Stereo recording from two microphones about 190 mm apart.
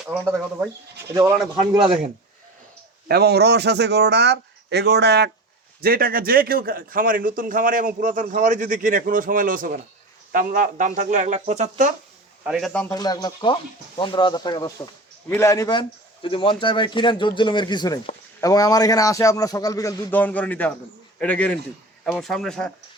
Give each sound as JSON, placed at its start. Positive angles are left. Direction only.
{"t": 0.0, "sound": "speech", "side_deg": -5}
{"t": 3.1, "sound": "a man's voice", "side_deg": -60}
{"t": 5.8, "sound": "a man's voice", "side_deg": -50}
{"t": 12.5, "sound": "speech", "side_deg": 0}
{"t": 12.9, "sound": "a man's voice", "side_deg": 20}